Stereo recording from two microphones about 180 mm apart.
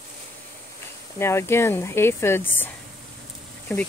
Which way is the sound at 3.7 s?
15° left (ahead or behind).